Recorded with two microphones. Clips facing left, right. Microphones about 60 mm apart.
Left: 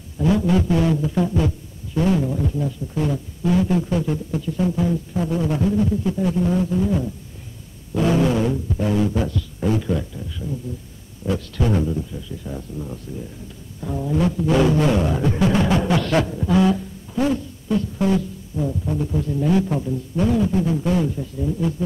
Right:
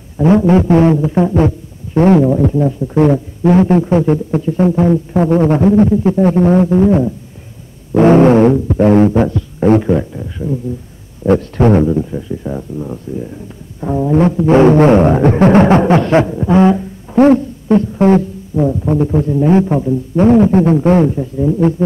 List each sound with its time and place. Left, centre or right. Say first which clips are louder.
0.2 s music: right 9 dB; right
2.0 s speech: right 11 dB; right
7.9 s a sound: right 12 dB; right
8.6 s speech: right 12 dB; right
9.3 s music: right 11 dB; right
17.1 s music: right 13 dB; right